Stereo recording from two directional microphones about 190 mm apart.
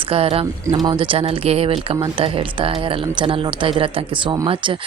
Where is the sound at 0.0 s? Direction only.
30° right (ahead or behind).